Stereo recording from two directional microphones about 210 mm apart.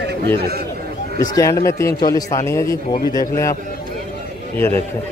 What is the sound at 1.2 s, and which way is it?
A man's voice, 15° left (ahead or behind).